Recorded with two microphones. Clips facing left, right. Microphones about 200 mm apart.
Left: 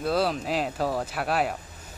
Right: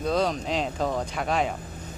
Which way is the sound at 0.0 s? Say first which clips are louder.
Even; 5° left (ahead or behind).